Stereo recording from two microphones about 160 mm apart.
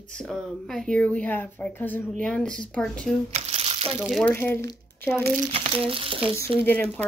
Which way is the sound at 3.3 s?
40° right (ahead or behind).